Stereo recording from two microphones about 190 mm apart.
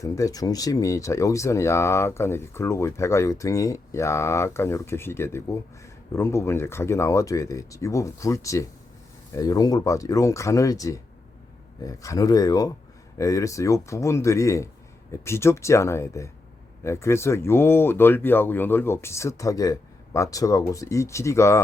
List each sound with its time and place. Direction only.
0.0 s speech: 20° left (ahead or behind)